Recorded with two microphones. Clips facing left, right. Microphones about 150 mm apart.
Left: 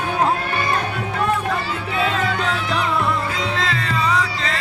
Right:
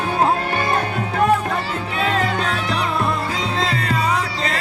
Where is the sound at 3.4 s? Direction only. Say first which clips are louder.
Right 1 dB; 30° right (ahead or behind).